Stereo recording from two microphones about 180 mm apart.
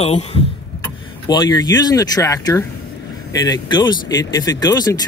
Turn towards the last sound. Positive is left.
turn(degrees=20)  # may be behind; listen again after turning